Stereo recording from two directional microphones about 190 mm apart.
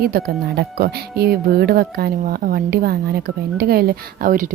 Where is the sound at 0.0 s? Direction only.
50° right (ahead or behind).